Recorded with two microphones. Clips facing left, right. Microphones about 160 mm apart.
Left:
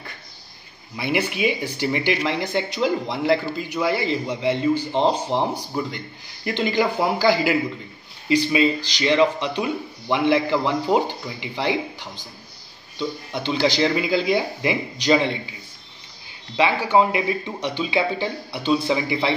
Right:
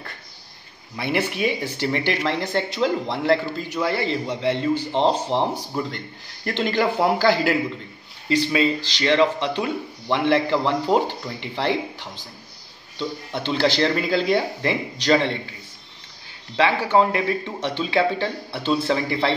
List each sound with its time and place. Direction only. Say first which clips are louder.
0.9 s speech: even; 10° left (ahead or behind)
13.3 s speech: even; 5° left (ahead or behind)
16.5 s speech: even; 10° left (ahead or behind)